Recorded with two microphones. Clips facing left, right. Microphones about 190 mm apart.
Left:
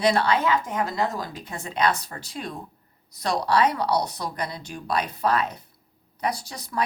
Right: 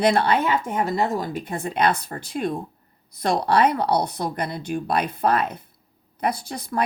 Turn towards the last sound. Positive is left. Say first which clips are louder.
# right 3 dB
turn(degrees=-55)  # may be behind; listen again after turning